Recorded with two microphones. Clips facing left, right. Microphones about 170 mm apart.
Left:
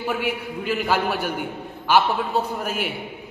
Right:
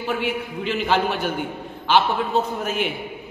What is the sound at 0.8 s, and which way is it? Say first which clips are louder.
A man's voice: right 3 dB; 10° left (ahead or behind).